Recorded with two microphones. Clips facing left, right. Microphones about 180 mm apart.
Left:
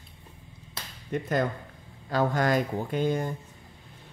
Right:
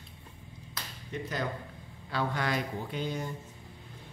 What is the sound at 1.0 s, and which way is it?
Speech, 50° left (ahead or behind).